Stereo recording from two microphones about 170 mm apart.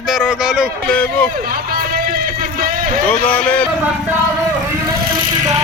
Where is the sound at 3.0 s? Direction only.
10° left (ahead or behind).